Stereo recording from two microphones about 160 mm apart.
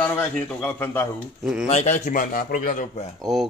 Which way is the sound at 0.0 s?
15° left (ahead or behind).